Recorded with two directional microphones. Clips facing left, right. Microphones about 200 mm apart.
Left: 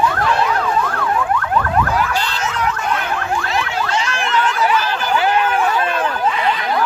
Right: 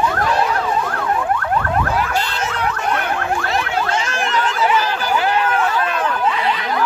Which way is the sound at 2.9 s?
50° right (ahead or behind).